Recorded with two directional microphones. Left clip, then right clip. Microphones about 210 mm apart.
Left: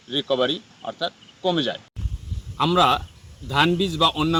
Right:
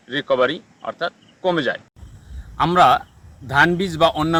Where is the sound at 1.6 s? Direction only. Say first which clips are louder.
Right 3 dB; 30° right (ahead or behind).